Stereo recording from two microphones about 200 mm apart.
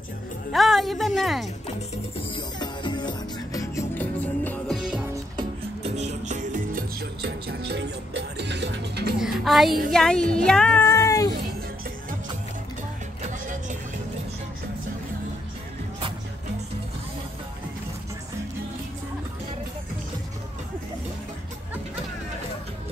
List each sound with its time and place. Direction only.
0.5 s speech: centre (ahead or behind)
2.3 s music: 20° left (ahead or behind); by 5.0 s centre (ahead or behind)
5.9 s music: 35° right (ahead or behind); by 9.2 s 55° right (ahead or behind)
9.2 s music: centre (ahead or behind)
9.8 s a woman's voice: 5° left (ahead or behind)
10.3 s cat: 5° left (ahead or behind)
13.2 s music: 40° right (ahead or behind)